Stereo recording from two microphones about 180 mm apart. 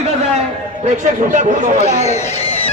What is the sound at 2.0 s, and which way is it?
Speech, 35° left (ahead or behind).